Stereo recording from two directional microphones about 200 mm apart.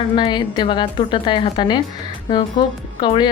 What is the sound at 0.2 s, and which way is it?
A woman's voice, 20° left (ahead or behind).